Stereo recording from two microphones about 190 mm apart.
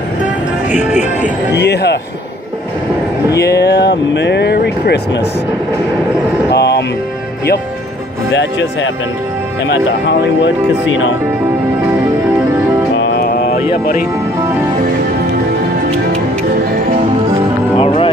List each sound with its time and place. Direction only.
0.7 s music: 40° left (ahead or behind)
1.5 s speech: 60° left (ahead or behind)
3.3 s speech: 60° left (ahead or behind)
6.5 s music: 60° left (ahead or behind)
8.3 s speech: 75° left (ahead or behind)
12.9 s music: 75° left (ahead or behind)
16.9 s music: 35° right (ahead or behind)
17.7 s music: 30° left (ahead or behind)